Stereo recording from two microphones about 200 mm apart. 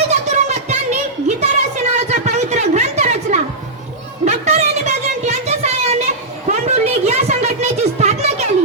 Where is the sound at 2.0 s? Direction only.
35° right (ahead or behind).